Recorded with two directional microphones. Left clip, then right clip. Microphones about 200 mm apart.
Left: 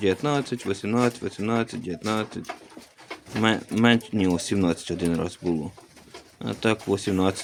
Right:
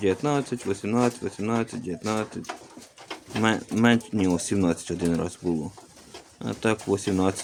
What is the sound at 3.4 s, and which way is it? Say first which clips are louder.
Speech: left 1 dB; 5° left (ahead or behind).